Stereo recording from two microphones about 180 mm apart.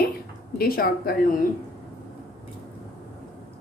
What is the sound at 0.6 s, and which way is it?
Speech, 55° left (ahead or behind).